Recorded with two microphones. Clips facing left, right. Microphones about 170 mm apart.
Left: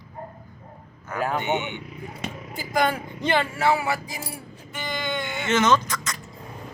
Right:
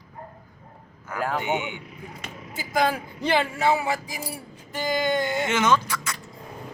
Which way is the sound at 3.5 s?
20° right (ahead or behind).